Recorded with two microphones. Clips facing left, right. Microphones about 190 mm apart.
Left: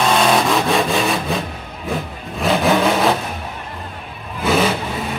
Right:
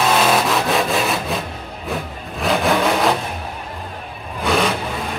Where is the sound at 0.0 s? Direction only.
5° right (ahead or behind).